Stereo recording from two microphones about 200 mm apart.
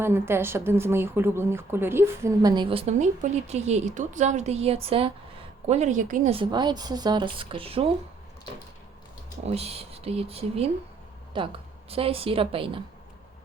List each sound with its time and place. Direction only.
0.0 s a woman's voice: 10° right (ahead or behind); by 6.3 s 40° right (ahead or behind)
6.3 s a woman's voice: 25° right (ahead or behind)
9.4 s a woman's voice: 30° right (ahead or behind)